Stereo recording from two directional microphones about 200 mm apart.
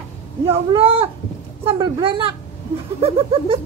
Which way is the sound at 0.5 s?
30° right (ahead or behind).